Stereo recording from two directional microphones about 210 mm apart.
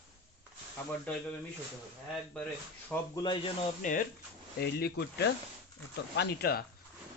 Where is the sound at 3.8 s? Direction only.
40° left (ahead or behind).